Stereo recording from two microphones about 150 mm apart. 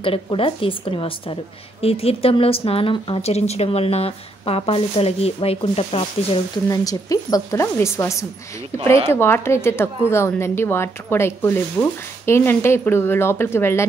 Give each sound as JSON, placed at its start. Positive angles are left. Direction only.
{"t": 0.0, "sound": "a woman's voice", "side_deg": 35}
{"t": 6.7, "sound": "a woman's voice", "side_deg": 25}